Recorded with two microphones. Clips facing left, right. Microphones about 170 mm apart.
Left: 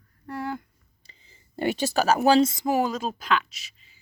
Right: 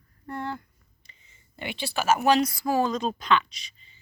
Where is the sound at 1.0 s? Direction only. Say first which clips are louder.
Left 4 dB; 30° left (ahead or behind).